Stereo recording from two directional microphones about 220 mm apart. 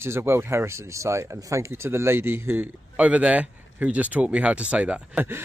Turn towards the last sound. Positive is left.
turn(degrees=-5)  # may be behind; listen again after turning